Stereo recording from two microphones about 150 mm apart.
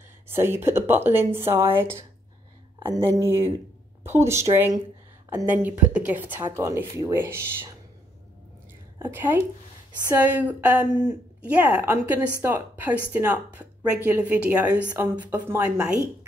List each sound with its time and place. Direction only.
0.3 s speech: 15° right (ahead or behind)
8.9 s a woman's voice: 15° right (ahead or behind)